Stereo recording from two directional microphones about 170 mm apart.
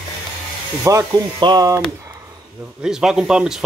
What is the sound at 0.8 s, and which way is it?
Speech, 20° right (ahead or behind).